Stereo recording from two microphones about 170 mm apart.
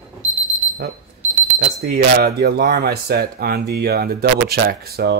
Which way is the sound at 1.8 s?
65° right (ahead or behind).